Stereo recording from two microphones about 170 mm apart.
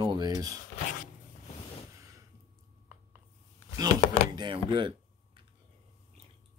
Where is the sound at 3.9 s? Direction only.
40° left (ahead or behind).